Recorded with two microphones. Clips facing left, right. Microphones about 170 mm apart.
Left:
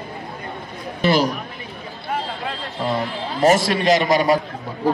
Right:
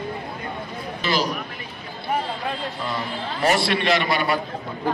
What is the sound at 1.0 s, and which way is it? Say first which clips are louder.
Speech: left 7 dB; 55° left (ahead or behind).